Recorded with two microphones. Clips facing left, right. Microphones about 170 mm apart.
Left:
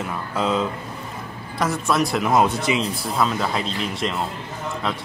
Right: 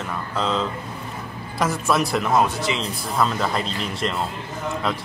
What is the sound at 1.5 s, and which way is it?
Speech, centre (ahead or behind).